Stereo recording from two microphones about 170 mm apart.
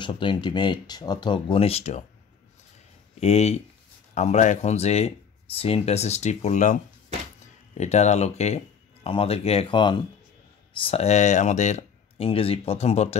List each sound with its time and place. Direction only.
0.0 s speech: 30° left (ahead or behind)
3.2 s speech: 40° left (ahead or behind)